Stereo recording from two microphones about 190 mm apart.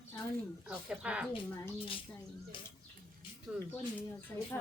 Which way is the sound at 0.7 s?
5° right (ahead or behind).